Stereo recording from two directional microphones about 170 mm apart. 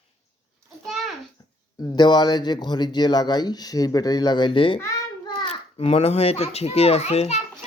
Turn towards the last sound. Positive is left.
turn(degrees=40)  # may be behind; listen again after turning